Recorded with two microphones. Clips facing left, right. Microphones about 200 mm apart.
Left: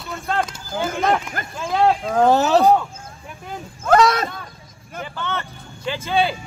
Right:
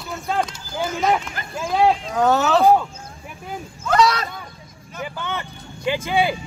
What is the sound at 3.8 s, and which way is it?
Speech, 50° left (ahead or behind).